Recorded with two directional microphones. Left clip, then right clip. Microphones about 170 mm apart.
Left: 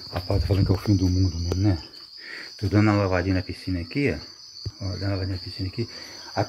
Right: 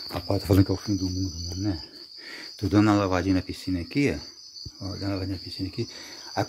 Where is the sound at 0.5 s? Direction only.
55° right (ahead or behind).